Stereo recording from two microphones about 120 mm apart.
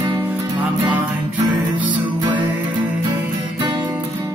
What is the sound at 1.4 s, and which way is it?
Music, 40° right (ahead or behind).